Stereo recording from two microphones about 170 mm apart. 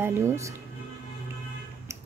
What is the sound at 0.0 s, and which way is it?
Speech, 15° right (ahead or behind).